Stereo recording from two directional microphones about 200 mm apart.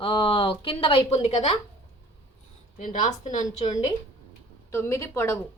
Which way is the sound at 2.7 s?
40° left (ahead or behind).